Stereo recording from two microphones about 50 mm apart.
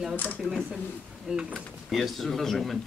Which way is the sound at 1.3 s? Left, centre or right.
Centre.